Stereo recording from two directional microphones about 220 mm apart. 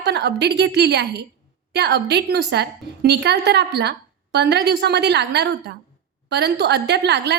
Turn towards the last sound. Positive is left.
turn(degrees=-50)  # may be behind; listen again after turning